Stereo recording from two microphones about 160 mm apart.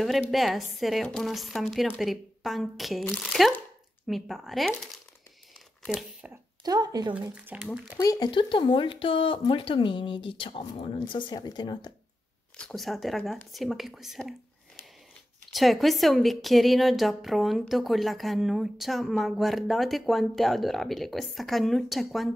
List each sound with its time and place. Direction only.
0.0 s a woman's voice: centre (ahead or behind)
6.6 s speech: 25° right (ahead or behind)
7.2 s speech: 10° right (ahead or behind)
8.0 s speech: 25° left (ahead or behind)
12.5 s a woman's voice: centre (ahead or behind)
15.5 s a woman's voice: centre (ahead or behind)